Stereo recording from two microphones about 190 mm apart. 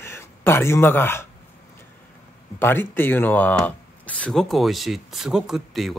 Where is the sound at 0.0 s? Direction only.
10° left (ahead or behind).